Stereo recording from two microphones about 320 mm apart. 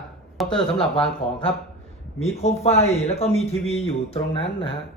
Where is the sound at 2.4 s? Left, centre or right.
Centre.